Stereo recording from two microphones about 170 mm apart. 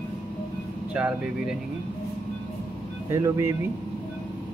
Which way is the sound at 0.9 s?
5° right (ahead or behind).